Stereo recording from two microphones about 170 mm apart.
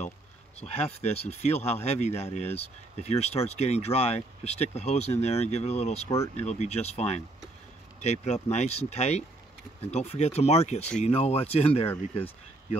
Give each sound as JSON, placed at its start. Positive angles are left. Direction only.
{"t": 0.6, "sound": "speech", "side_deg": 40}